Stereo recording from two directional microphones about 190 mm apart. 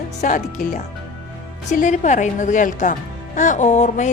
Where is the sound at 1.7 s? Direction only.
40° left (ahead or behind).